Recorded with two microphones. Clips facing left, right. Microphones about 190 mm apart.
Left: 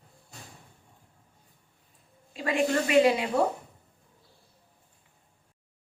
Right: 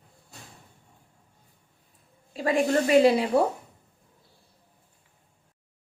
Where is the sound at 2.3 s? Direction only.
35° right (ahead or behind).